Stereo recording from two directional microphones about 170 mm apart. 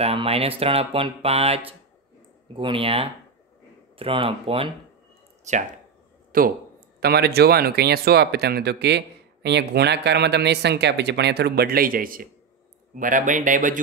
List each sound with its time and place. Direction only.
0.0 s speech: 35° right (ahead or behind)
5.4 s speech: 45° right (ahead or behind)
6.3 s speech: 55° right (ahead or behind)
7.0 s speech: 70° right (ahead or behind); by 13.7 s 50° right (ahead or behind)